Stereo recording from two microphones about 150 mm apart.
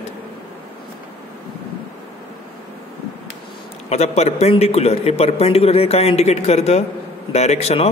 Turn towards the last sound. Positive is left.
turn(degrees=45)  # may be behind; listen again after turning